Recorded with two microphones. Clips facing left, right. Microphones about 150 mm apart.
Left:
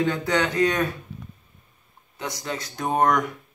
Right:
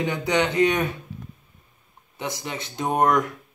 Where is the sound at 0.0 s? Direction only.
15° right (ahead or behind).